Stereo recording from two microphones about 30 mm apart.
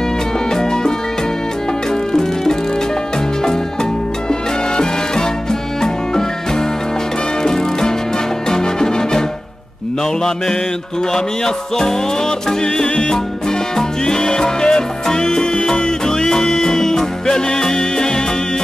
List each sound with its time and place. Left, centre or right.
0.5 s music: left
4.3 s music: left
10.2 s music: centre